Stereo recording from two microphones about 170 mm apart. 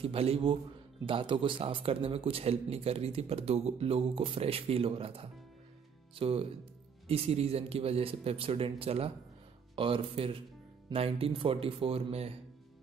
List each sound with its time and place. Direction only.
0.0 s speech: 35° right (ahead or behind)